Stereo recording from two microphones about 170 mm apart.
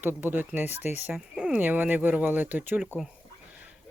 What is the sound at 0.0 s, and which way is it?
Speech, 10° right (ahead or behind).